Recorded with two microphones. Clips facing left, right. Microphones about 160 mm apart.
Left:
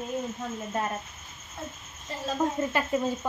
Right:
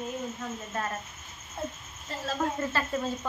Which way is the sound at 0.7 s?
20° left (ahead or behind).